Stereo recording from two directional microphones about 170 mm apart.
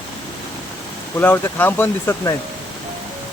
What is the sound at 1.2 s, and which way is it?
Speech, 10° left (ahead or behind).